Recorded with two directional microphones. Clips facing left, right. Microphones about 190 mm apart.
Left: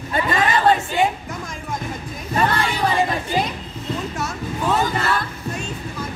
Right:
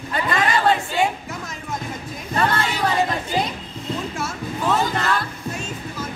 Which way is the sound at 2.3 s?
10° left (ahead or behind).